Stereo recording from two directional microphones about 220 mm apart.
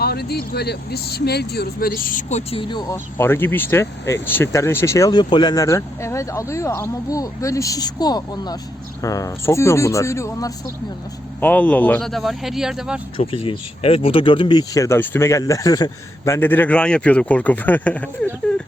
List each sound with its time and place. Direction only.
0.0 s a man's voice: 45° left (ahead or behind); by 13.0 s centre (ahead or behind)
13.3 s speech: 25° left (ahead or behind); by 18.3 s 5° left (ahead or behind)